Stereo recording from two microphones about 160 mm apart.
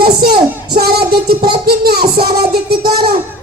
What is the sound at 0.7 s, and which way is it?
Music, 80° right.